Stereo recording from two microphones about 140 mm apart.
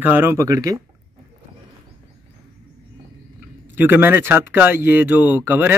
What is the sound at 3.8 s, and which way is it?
Speech, 15° right (ahead or behind).